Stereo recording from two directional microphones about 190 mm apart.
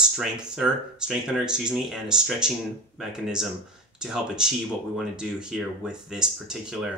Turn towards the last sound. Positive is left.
turn(degrees=-5)  # may be behind; listen again after turning